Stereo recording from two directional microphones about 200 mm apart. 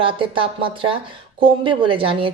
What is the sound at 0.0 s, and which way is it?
A woman's voice, 25° right (ahead or behind).